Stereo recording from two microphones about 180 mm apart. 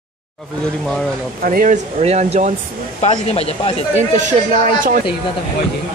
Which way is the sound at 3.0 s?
35° left (ahead or behind).